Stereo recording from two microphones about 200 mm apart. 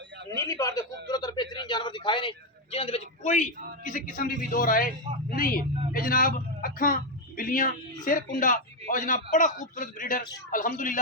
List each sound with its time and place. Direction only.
0.3 s a man's voice: 15° left (ahead or behind); by 11.0 s 40° left (ahead or behind)